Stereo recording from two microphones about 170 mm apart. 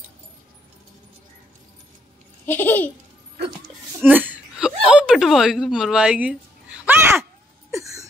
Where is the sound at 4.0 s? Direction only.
10° right (ahead or behind).